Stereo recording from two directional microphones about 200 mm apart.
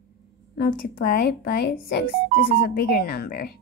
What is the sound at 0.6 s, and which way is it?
Speech, 45° left (ahead or behind).